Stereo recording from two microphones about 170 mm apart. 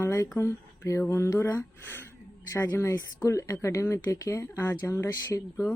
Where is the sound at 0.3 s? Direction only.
15° left (ahead or behind).